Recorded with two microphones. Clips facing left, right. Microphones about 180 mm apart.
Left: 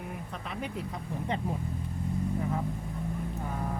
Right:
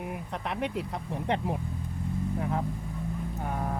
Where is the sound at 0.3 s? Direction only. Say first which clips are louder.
Right 8 dB; 65° right (ahead or behind).